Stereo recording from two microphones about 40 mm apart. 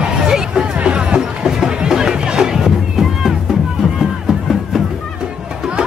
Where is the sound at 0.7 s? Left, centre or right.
Right; by 4.8 s centre.